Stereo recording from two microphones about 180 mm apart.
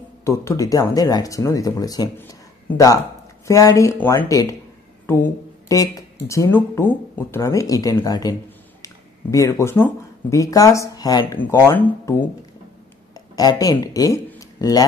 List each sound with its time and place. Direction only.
0.2 s speech: 15° left (ahead or behind)
8.8 s a sound: 20° left (ahead or behind)
10.3 s speech: 20° left (ahead or behind)